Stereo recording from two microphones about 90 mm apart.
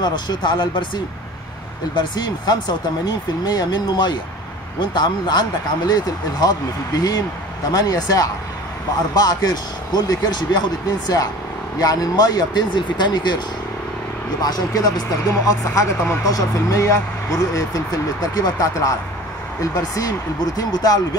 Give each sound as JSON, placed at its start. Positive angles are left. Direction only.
{"t": 0.0, "sound": "speech", "side_deg": 55}
{"t": 2.0, "sound": "speech", "side_deg": 55}
{"t": 11.8, "sound": "speech", "side_deg": 45}
{"t": 14.4, "sound": "speech", "side_deg": 45}